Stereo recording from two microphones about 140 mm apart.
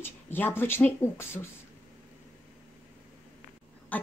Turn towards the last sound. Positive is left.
turn(degrees=10)  # may be behind; listen again after turning